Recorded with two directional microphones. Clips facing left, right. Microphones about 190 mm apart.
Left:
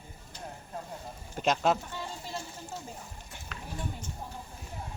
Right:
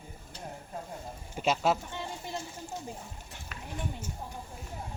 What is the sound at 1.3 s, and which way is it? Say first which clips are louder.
Speech: left 1 dB; 5° right (ahead or behind).